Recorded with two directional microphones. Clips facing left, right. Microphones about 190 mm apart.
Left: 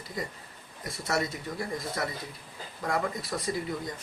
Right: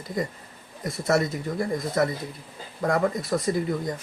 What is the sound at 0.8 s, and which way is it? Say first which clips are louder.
Speech: right 7 dB; 50° right (ahead or behind).